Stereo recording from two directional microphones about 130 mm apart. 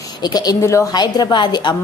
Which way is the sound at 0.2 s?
30° left (ahead or behind).